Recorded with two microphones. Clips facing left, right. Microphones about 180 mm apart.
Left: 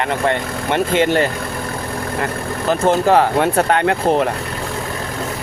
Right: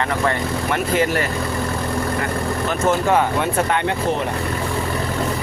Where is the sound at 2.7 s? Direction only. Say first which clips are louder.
Left 5 dB; 35° left (ahead or behind).